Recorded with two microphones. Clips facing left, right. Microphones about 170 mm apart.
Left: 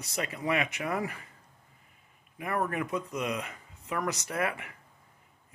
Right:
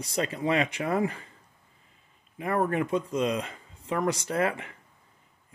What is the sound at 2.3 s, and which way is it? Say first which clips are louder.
Speech: right 5 dB; 30° right (ahead or behind).